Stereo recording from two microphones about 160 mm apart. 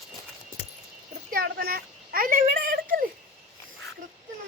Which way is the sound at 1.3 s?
65° right (ahead or behind).